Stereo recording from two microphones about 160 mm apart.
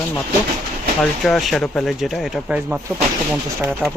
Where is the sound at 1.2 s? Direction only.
Centre (ahead or behind).